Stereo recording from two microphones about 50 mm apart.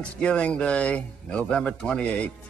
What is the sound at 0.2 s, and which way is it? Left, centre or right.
Speech, left.